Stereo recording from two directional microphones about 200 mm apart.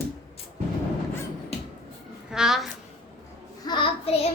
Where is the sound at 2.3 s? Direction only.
Centre (ahead or behind).